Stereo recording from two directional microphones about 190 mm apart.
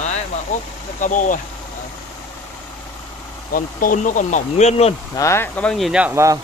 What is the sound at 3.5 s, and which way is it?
Speech, 45° left (ahead or behind).